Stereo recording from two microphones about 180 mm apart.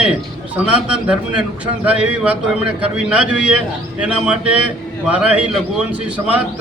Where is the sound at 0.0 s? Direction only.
5° right (ahead or behind).